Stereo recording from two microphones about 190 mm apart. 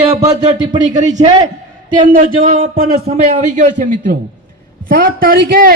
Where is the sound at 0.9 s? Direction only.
40° right (ahead or behind).